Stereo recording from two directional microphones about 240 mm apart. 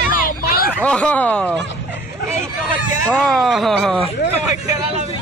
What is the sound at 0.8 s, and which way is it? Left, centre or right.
Speech, centre.